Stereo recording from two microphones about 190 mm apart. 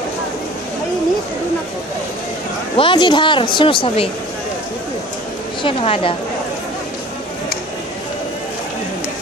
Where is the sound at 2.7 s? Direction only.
25° left (ahead or behind).